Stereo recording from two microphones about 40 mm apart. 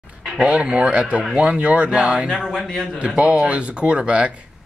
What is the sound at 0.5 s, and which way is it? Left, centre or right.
Speech, right.